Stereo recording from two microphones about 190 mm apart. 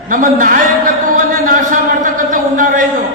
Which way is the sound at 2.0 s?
45° right (ahead or behind).